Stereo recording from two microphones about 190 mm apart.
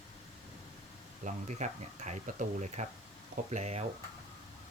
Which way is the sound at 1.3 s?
40° right (ahead or behind).